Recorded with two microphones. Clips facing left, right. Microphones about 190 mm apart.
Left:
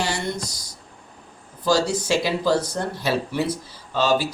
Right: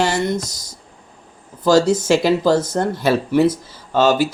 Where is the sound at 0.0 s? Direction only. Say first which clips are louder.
Right 7 dB; 45° right (ahead or behind).